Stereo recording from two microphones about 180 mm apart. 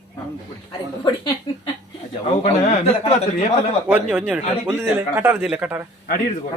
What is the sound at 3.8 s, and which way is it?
A man's voice, 5° right (ahead or behind).